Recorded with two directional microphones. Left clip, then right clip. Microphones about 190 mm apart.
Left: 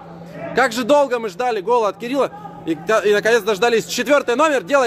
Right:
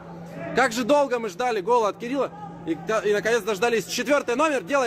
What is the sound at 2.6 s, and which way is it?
Speech, 40° left (ahead or behind).